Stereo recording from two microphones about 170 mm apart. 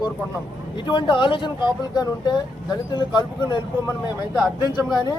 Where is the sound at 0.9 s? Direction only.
25° left (ahead or behind).